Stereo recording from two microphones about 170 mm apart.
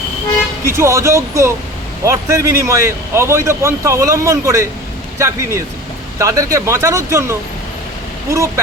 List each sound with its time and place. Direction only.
0.6 s a man's voice: 15° right (ahead or behind)